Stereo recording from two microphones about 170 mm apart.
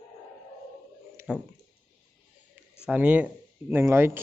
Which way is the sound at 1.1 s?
15° right (ahead or behind).